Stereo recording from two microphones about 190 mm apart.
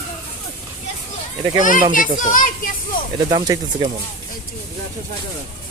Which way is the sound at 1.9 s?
45° left (ahead or behind).